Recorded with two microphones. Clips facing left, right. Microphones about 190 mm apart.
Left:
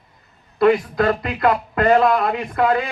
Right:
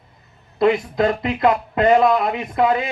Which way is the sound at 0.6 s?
25° right (ahead or behind).